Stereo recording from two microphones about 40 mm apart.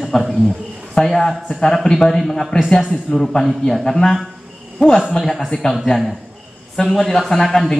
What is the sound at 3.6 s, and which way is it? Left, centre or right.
Speech, centre.